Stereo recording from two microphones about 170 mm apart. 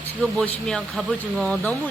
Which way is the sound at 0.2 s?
5° left (ahead or behind).